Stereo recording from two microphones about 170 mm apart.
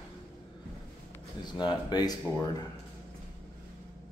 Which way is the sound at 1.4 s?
25° left (ahead or behind).